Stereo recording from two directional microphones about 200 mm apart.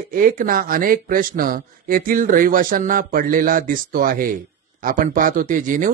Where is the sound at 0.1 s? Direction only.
45° right (ahead or behind).